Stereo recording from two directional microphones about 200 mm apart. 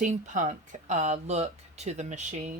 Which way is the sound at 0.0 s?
40° right (ahead or behind).